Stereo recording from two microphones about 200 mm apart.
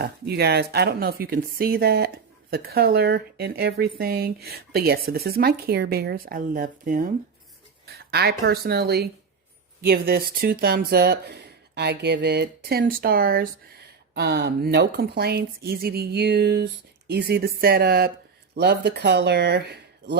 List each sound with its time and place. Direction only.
0.0 s speech: 55° right (ahead or behind)